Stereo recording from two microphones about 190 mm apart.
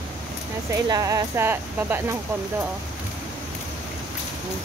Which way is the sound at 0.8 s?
20° right (ahead or behind).